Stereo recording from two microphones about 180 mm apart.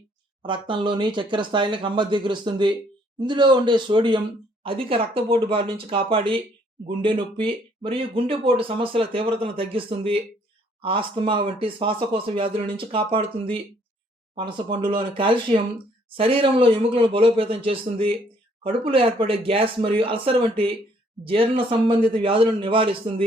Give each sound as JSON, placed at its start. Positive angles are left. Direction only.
{"t": 0.4, "sound": "speech", "side_deg": -25}